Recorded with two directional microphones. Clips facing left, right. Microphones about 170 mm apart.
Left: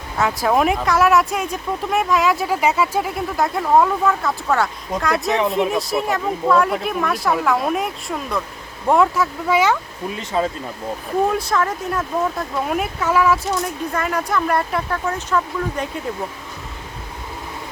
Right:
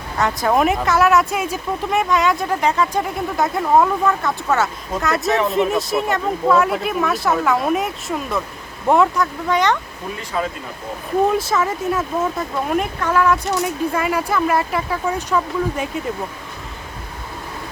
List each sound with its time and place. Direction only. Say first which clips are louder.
0.2 s speech: even; centre (ahead or behind)
10.3 s speech: left 3 dB; 25° left (ahead or behind)
11.3 s speech: right 1 dB; centre (ahead or behind)
13.6 s speech: right 3 dB; 10° right (ahead or behind)